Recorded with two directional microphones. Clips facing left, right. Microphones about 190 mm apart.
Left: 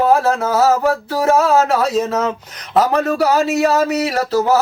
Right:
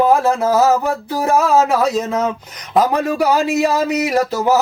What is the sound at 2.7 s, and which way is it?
Speech, 15° right (ahead or behind).